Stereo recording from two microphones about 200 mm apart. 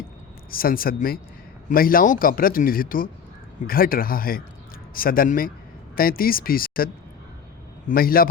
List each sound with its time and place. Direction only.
0.5 s speech: 45° left (ahead or behind)